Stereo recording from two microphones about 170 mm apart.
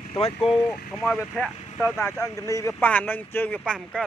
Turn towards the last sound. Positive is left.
turn(degrees=5)  # may be behind; listen again after turning